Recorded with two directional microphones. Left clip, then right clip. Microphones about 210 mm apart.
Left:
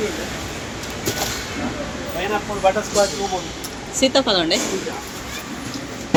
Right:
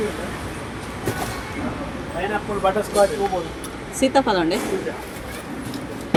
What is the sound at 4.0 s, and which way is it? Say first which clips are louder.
Speech: left 1 dB; 20° right (ahead or behind).